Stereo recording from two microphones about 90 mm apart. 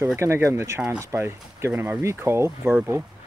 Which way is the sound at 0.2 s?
30° right (ahead or behind).